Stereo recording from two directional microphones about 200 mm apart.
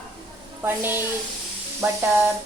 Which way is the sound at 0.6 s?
10° right (ahead or behind).